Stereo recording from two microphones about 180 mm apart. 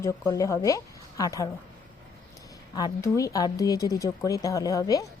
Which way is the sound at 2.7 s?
20° left (ahead or behind).